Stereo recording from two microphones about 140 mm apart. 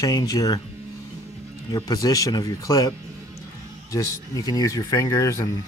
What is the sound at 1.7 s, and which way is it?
Speech, 25° left (ahead or behind).